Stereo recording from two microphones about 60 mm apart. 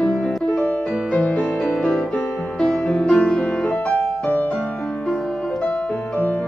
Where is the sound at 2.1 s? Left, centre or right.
Left.